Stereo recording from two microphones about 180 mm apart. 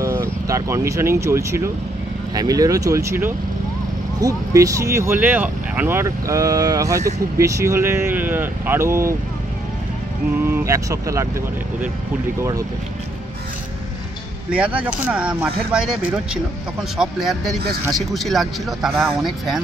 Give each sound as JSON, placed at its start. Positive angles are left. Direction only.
{"t": 0.0, "sound": "speech", "side_deg": -15}
{"t": 10.4, "sound": "speech", "side_deg": -15}
{"t": 14.8, "sound": "speech", "side_deg": -5}
{"t": 16.9, "sound": "speech", "side_deg": 0}